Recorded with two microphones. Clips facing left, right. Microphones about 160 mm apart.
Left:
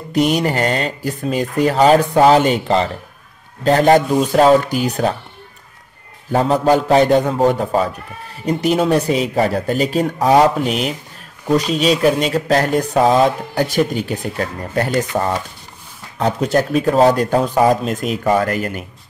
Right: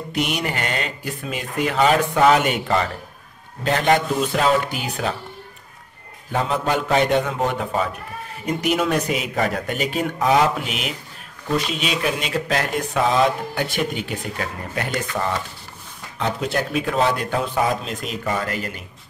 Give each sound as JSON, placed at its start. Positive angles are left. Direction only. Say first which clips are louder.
{"t": 0.1, "sound": "speech", "louder": "left 9 dB", "side_deg": 35}
{"t": 6.3, "sound": "speech", "louder": "left 8 dB", "side_deg": 40}